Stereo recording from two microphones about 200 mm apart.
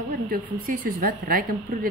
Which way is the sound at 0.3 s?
45° right (ahead or behind).